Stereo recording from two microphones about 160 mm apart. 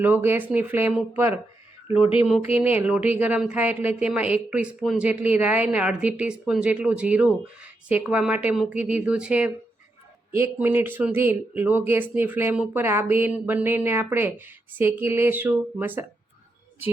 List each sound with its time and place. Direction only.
0.0 s speech: 10° right (ahead or behind)
1.9 s speech: 35° left (ahead or behind)
2.2 s speech: centre (ahead or behind)